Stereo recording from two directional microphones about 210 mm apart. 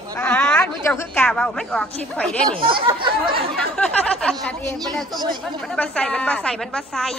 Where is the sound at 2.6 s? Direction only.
25° right (ahead or behind).